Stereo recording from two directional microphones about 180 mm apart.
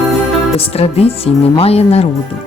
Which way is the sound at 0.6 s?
35° left (ahead or behind).